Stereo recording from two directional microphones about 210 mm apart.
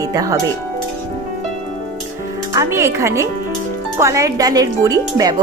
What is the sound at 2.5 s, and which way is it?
Speech, 15° right (ahead or behind).